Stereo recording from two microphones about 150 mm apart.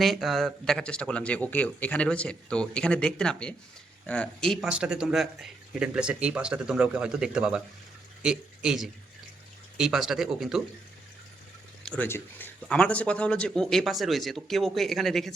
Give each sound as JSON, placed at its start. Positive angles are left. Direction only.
{"t": 0.0, "sound": "speech", "side_deg": 0}
{"t": 11.8, "sound": "a sound", "side_deg": 5}
{"t": 12.0, "sound": "speech", "side_deg": 15}